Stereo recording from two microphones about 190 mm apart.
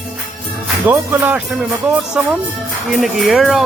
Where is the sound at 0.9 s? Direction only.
10° right (ahead or behind).